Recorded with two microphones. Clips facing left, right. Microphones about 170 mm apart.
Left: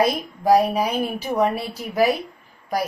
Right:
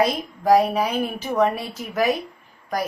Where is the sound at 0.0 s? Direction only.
10° left (ahead or behind).